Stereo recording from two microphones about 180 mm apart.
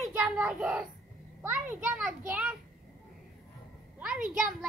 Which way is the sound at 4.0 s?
5° right (ahead or behind).